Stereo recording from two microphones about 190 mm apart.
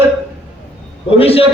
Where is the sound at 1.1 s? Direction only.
30° left (ahead or behind).